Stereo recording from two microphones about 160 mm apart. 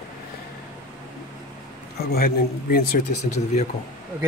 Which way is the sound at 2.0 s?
70° left (ahead or behind).